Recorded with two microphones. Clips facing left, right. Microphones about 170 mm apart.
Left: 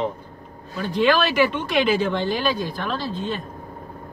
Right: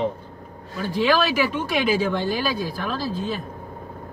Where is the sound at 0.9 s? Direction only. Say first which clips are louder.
Left 2 dB; 5° right (ahead or behind).